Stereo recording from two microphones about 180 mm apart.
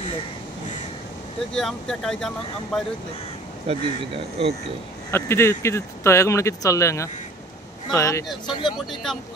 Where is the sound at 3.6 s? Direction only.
35° right (ahead or behind).